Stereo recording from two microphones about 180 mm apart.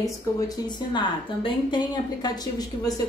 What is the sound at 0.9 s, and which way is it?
A woman's voice, 25° left (ahead or behind).